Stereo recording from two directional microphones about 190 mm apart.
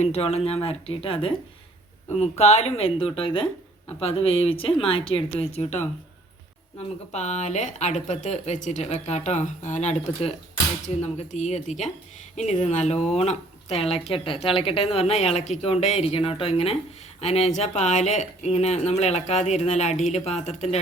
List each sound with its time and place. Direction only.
0.0 s speech: 30° left (ahead or behind)